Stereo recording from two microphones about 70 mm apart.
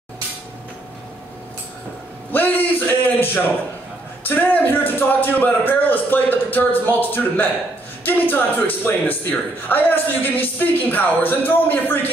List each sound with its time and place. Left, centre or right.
2.3 s speech: left